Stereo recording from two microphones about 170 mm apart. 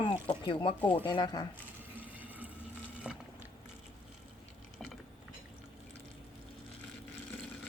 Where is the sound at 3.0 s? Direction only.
5° right (ahead or behind).